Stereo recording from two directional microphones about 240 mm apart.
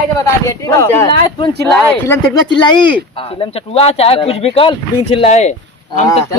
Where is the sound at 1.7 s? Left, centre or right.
Centre.